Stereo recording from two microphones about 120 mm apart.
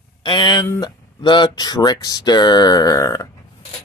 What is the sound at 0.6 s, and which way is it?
Speech, 25° left (ahead or behind).